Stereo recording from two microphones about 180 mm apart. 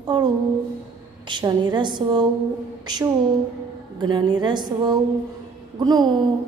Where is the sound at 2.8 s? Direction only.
20° right (ahead or behind).